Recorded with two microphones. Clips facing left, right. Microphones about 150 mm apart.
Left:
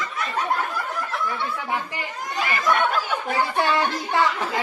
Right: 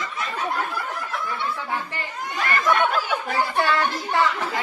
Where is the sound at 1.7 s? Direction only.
15° left (ahead or behind).